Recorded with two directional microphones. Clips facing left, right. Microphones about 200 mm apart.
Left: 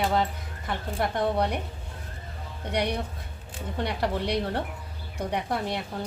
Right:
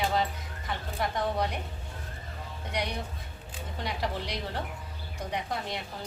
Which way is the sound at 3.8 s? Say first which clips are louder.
Left 5 dB; 60° left (ahead or behind).